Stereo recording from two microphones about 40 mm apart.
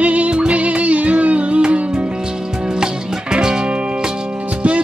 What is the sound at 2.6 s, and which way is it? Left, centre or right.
Music, centre.